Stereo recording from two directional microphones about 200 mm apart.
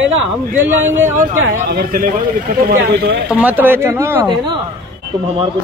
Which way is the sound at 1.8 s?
45° right (ahead or behind).